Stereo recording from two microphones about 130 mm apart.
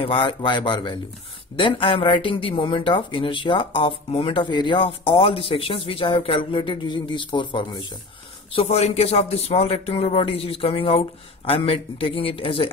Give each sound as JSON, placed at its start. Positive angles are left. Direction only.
{"t": 0.0, "sound": "speech", "side_deg": 40}
{"t": 8.5, "sound": "speech", "side_deg": 55}